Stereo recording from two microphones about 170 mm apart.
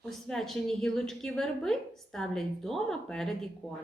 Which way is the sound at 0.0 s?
5° left (ahead or behind).